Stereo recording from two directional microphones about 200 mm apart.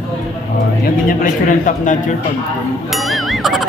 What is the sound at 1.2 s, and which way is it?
Speech, 40° left (ahead or behind).